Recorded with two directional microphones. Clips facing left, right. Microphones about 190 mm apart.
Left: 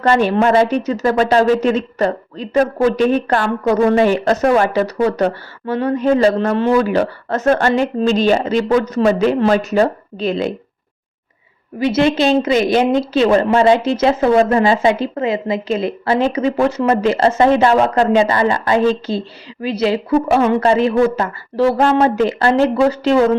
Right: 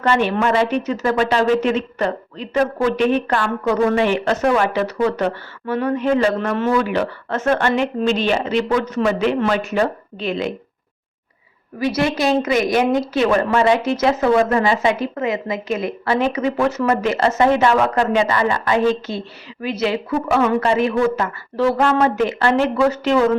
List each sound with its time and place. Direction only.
0.0 s a woman's voice: 40° left (ahead or behind)
11.8 s a woman's voice: 25° left (ahead or behind)